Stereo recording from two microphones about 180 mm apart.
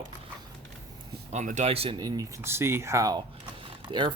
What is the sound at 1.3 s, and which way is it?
Speech, 40° right (ahead or behind).